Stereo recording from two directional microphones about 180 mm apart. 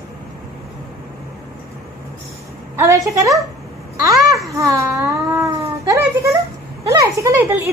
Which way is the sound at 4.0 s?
20° right (ahead or behind).